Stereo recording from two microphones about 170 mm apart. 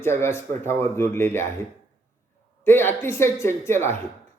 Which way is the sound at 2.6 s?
10° left (ahead or behind).